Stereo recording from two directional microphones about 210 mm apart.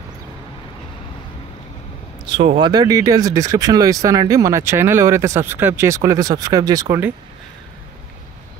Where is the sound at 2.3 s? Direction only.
25° right (ahead or behind).